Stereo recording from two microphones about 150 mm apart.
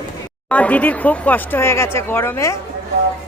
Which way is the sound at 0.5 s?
10° left (ahead or behind).